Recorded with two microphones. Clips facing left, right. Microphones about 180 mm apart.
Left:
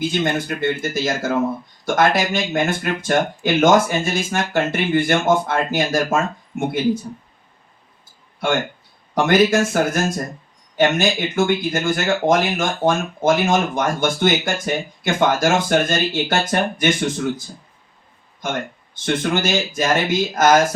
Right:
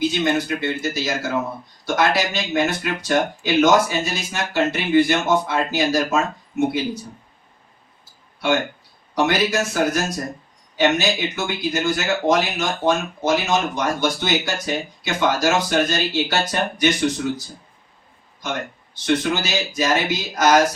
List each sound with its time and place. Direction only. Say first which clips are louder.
0.0 s speech: right 1 dB; 50° left (ahead or behind)
9.1 s speech: left 4 dB; 50° left (ahead or behind)
18.4 s speech: left 2 dB; 50° left (ahead or behind)